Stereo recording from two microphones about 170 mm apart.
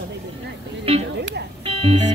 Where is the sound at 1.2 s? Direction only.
90° right.